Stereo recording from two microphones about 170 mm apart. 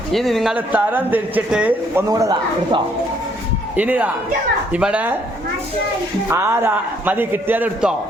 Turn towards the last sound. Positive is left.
turn(degrees=-5)  # may be behind; listen again after turning